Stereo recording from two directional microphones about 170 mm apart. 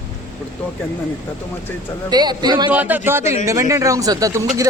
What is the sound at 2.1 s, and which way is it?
Speech, 25° right (ahead or behind).